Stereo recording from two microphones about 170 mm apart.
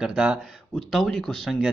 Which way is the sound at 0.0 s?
5° right (ahead or behind).